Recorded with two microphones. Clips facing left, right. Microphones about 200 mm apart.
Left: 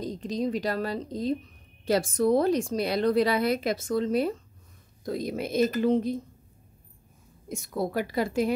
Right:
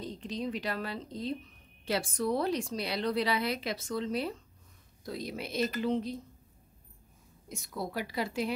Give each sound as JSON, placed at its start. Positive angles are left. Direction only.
{"t": 0.0, "sound": "a woman's voice", "side_deg": 40}
{"t": 7.4, "sound": "a woman's voice", "side_deg": 50}